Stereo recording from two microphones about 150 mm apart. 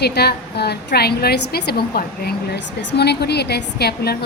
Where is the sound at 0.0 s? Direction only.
90° left.